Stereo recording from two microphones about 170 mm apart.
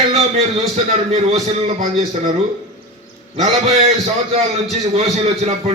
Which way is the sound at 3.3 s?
40° right (ahead or behind).